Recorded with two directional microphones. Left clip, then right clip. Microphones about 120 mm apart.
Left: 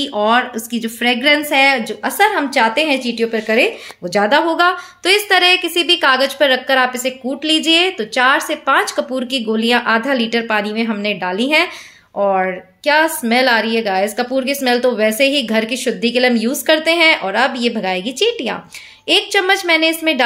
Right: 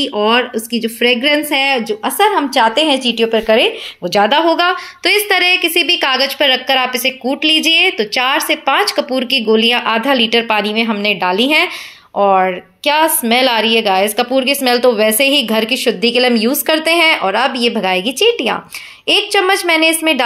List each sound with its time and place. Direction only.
0.0 s a woman's voice: 10° right (ahead or behind)